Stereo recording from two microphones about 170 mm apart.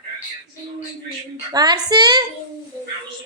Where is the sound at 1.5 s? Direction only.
25° right (ahead or behind).